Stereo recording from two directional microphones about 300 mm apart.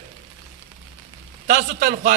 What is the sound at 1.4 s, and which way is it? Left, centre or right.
Speech, right.